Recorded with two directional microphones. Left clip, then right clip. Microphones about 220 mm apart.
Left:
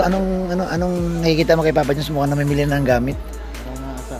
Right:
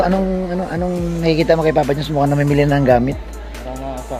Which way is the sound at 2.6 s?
10° right (ahead or behind).